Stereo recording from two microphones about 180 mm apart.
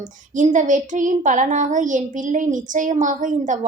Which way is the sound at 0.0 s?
45° right (ahead or behind).